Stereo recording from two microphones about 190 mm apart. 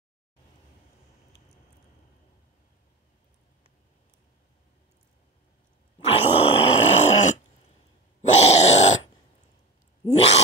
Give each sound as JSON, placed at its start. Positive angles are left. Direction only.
{"t": 5.9, "sound": "grunt", "side_deg": 30}
{"t": 10.0, "sound": "cat", "side_deg": 35}